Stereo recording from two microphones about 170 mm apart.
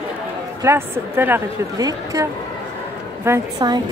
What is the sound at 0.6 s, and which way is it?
Speech, 15° right (ahead or behind).